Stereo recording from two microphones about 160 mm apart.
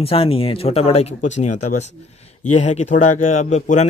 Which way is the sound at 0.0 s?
35° left (ahead or behind).